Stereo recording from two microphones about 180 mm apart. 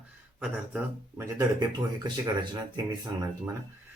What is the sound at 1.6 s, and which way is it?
Speech, 25° right (ahead or behind).